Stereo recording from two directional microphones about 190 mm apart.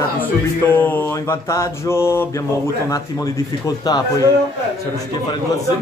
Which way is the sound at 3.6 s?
20° left (ahead or behind).